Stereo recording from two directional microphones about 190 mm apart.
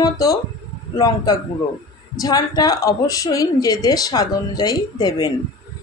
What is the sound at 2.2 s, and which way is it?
A woman's voice, 20° left (ahead or behind).